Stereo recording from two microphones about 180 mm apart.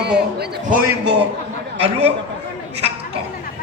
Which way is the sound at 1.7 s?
35° right (ahead or behind).